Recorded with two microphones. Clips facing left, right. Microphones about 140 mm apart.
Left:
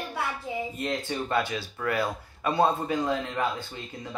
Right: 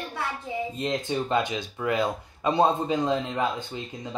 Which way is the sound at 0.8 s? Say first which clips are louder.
Right 5 dB; 20° right (ahead or behind).